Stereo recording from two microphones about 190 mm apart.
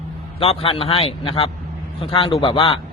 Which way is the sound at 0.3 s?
30° left (ahead or behind).